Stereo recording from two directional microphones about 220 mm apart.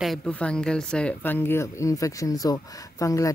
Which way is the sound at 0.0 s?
Centre (ahead or behind).